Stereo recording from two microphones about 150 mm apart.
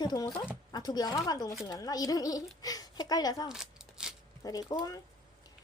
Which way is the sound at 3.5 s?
5° right (ahead or behind).